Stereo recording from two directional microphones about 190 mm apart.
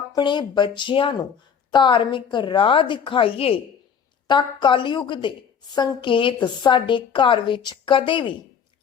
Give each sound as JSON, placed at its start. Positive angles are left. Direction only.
{"t": 0.1, "sound": "a woman's voice", "side_deg": 25}